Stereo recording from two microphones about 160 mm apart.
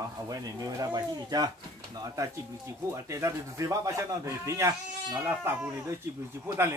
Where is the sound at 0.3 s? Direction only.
25° right (ahead or behind).